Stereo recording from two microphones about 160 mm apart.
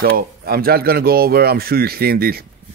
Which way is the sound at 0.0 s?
70° right (ahead or behind).